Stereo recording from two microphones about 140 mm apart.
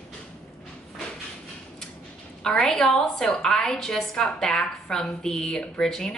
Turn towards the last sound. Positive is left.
turn(degrees=5)  # may be behind; listen again after turning